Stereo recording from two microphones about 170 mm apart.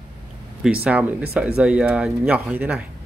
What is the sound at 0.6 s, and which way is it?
Speech, 5° right (ahead or behind).